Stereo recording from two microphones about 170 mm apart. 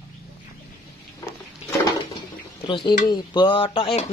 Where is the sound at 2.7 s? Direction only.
30° left (ahead or behind).